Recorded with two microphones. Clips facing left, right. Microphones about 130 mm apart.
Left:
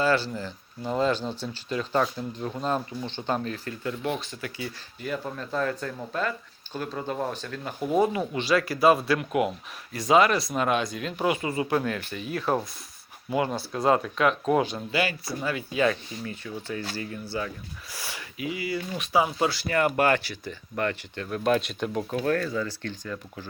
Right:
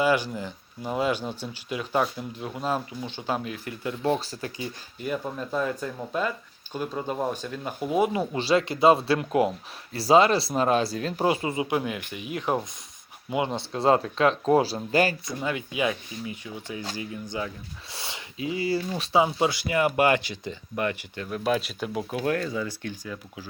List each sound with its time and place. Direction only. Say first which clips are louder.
0.0 s speech: right 1 dB; 15° right (ahead or behind)
4.0 s speech: right 9 dB; 35° right (ahead or behind)
4.5 s speech: right 1 dB; 15° right (ahead or behind)
7.8 s speech: left 1 dB; 5° right (ahead or behind)
8.3 s speech: right 1 dB; 30° right (ahead or behind)
11.5 s speech: left 1 dB; 15° right (ahead or behind); by 14.8 s 30° right (ahead or behind)
15.3 s speech: even; 20° right (ahead or behind); by 22.0 s 5° right (ahead or behind)
22.1 s speech: even; 20° right (ahead or behind)